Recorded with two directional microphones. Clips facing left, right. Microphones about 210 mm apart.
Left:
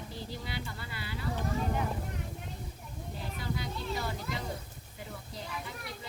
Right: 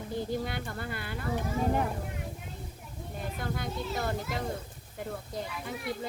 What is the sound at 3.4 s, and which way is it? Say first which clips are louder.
A woman's voice: right 2 dB; 50° right (ahead or behind).